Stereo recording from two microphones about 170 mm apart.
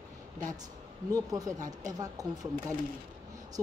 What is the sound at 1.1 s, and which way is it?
Speech, 20° right (ahead or behind).